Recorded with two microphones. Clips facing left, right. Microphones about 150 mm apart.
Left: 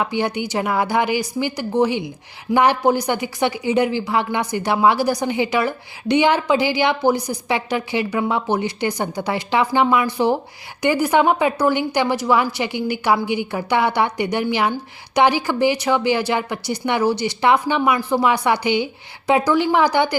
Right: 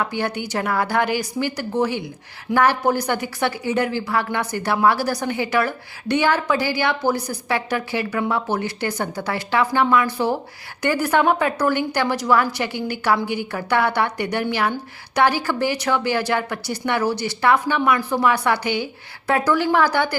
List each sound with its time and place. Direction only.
0.2 s a woman's voice: 15° left (ahead or behind)